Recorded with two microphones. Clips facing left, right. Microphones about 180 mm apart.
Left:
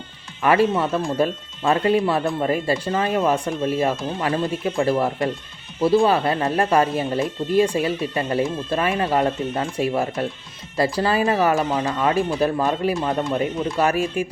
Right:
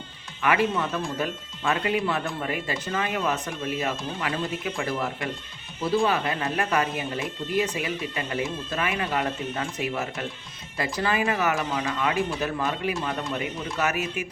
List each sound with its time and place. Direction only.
0.4 s speech: 35° left (ahead or behind)